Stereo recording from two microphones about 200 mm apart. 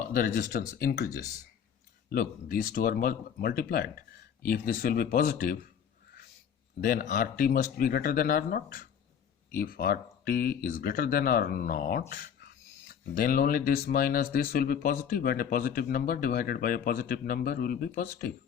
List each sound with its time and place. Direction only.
0.1 s speech: 45° left (ahead or behind)
6.8 s speech: 50° left (ahead or behind)